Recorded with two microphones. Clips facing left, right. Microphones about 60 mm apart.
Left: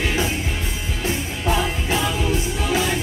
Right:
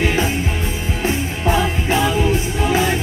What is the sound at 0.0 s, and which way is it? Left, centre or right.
Music, right.